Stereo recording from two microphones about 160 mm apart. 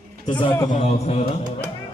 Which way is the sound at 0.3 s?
30° left (ahead or behind).